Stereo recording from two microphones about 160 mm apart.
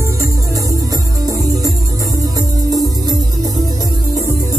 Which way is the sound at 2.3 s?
25° right (ahead or behind).